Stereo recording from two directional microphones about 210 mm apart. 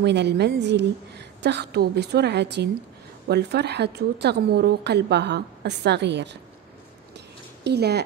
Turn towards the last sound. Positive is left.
turn(degrees=-50)  # may be behind; listen again after turning